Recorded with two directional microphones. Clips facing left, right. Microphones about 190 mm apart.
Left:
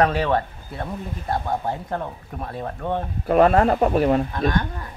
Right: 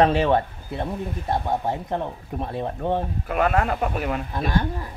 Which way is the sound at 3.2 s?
35° left (ahead or behind).